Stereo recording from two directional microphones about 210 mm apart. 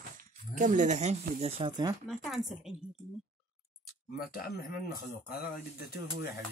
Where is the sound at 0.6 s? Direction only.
35° right (ahead or behind); by 2.0 s 20° right (ahead or behind).